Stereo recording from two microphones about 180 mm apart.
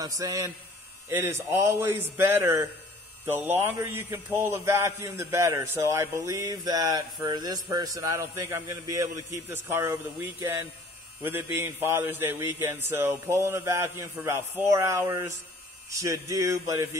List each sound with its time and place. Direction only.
0.0 s a man's voice: 20° right (ahead or behind)